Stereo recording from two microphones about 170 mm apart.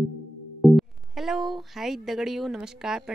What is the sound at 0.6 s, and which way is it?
Speech, centre (ahead or behind).